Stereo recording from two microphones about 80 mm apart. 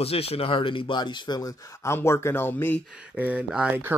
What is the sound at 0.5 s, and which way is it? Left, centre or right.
Speech, left.